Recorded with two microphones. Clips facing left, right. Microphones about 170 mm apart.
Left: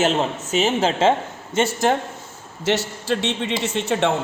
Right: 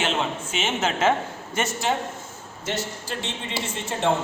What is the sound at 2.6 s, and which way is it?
A man's voice, 75° left (ahead or behind).